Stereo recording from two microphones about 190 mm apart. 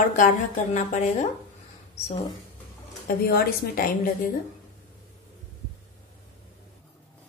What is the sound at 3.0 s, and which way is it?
Speech, 50° left (ahead or behind).